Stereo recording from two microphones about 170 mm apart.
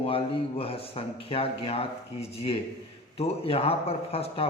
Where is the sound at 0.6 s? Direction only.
35° left (ahead or behind).